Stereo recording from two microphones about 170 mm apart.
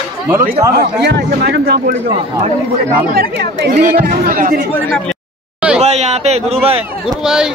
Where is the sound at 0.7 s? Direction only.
75° right (ahead or behind).